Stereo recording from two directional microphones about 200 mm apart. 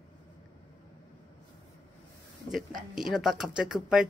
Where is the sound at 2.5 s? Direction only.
Centre (ahead or behind).